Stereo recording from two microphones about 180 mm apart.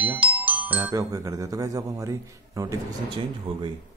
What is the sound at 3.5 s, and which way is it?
Speech, 30° right (ahead or behind).